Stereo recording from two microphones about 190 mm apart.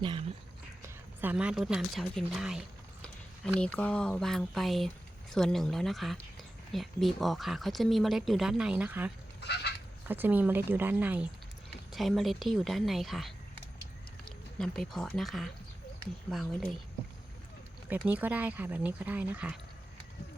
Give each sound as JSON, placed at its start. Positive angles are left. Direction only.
{"t": 0.8, "sound": "speech", "side_deg": -10}
{"t": 9.4, "sound": "fowl", "side_deg": 60}
{"t": 10.1, "sound": "speech", "side_deg": -10}
{"t": 17.8, "sound": "speech", "side_deg": -10}